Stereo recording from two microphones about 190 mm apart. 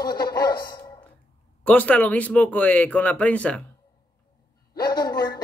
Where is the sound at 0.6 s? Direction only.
20° left (ahead or behind).